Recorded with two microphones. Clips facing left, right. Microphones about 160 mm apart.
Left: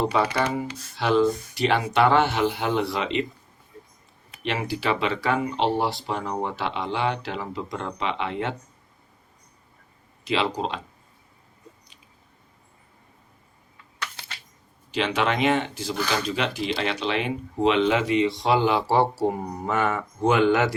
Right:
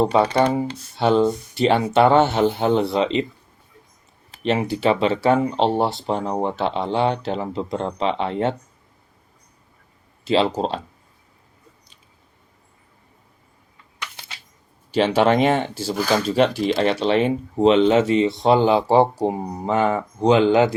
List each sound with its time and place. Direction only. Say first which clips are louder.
0.0 s speech: right 6 dB; 30° right (ahead or behind)
4.4 s speech: right 7 dB; 25° right (ahead or behind)
10.2 s speech: right 6 dB; 30° right (ahead or behind)
14.0 s a sound: even; 15° right (ahead or behind)
15.2 s speech: right 5 dB; 45° right (ahead or behind)
20.2 s speech: right 5 dB; 20° right (ahead or behind)